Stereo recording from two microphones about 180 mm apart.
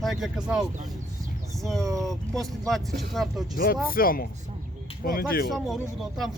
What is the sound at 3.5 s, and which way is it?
Speech, 50° left (ahead or behind).